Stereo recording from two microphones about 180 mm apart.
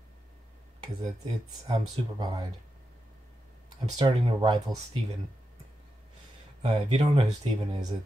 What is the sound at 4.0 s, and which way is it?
Speech, 30° right (ahead or behind).